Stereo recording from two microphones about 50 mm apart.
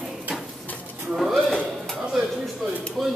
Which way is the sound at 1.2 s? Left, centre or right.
Centre.